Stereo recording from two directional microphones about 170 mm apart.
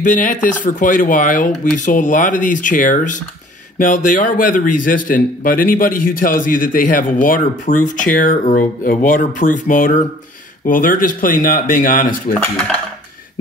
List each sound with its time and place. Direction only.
0.0 s a man's voice: 50° left (ahead or behind)